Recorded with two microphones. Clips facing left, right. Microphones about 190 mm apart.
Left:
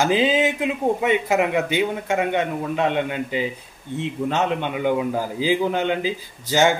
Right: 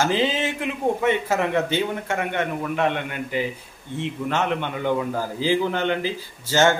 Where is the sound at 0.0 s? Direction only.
15° left (ahead or behind).